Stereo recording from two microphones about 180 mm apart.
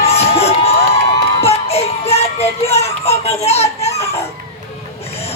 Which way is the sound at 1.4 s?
35° left (ahead or behind).